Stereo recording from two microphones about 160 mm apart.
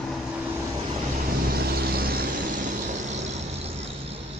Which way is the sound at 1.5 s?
75° right (ahead or behind).